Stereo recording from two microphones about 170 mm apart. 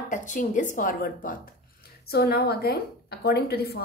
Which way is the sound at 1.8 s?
65° left (ahead or behind).